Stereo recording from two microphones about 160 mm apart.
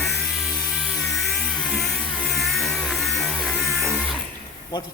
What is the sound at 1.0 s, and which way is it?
Music, centre (ahead or behind).